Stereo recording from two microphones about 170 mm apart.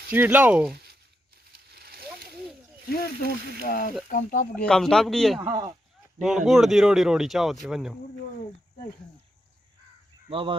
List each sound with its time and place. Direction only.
0.1 s speech: 10° right (ahead or behind)
0.7 s a sound: 70° right (ahead or behind)
1.7 s splash: 65° right (ahead or behind)
2.9 s speech: 65° left (ahead or behind)
4.5 s speech: 5° left (ahead or behind)
5.5 s speech: 20° right (ahead or behind)
6.1 s speech: centre (ahead or behind)
10.2 s speech: 30° right (ahead or behind)